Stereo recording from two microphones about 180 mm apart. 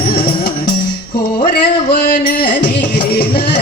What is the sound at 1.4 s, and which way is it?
Music, 55° left (ahead or behind).